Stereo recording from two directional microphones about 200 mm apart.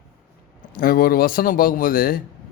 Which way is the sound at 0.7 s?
45° left (ahead or behind).